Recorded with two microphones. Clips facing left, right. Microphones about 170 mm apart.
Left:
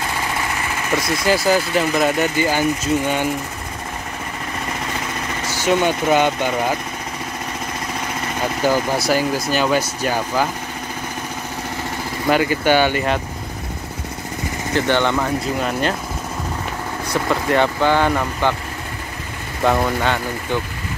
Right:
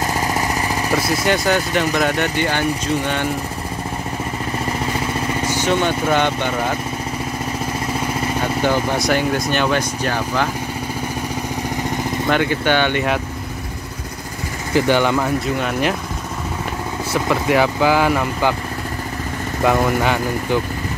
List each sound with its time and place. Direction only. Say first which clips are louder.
0.0 s a sound: right 3 dB; 40° right (ahead or behind)
0.9 s speech: left 1 dB; centre (ahead or behind)
5.5 s speech: left 2 dB; 10° left (ahead or behind)
8.6 s speech: left 1 dB; 5° left (ahead or behind)
12.3 s speech: left 2 dB; 5° left (ahead or behind)
14.7 s speech: right 2 dB; 10° right (ahead or behind)
17.1 s speech: right 1 dB; 5° right (ahead or behind)
19.6 s speech: right 1 dB; 5° right (ahead or behind)